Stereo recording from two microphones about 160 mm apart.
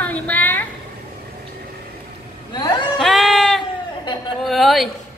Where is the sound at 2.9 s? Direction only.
Centre (ahead or behind).